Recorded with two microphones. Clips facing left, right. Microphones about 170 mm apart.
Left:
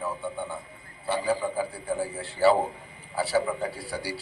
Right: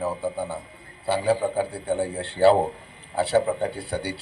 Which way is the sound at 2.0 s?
65° right (ahead or behind).